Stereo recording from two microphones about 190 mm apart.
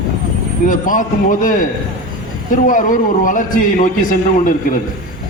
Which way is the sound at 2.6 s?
45° left (ahead or behind).